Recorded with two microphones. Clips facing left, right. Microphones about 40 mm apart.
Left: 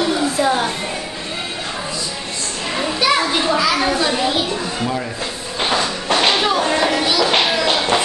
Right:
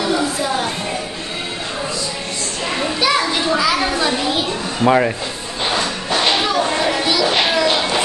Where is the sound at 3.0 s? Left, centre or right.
Centre.